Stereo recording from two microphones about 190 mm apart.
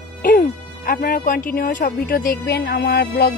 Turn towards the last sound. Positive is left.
turn(degrees=55)  # may be behind; listen again after turning